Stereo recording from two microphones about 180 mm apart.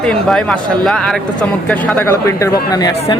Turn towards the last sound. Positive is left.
turn(degrees=20)  # may be behind; listen again after turning